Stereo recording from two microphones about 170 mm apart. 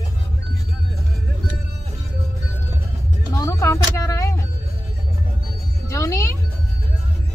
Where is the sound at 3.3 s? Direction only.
20° left (ahead or behind).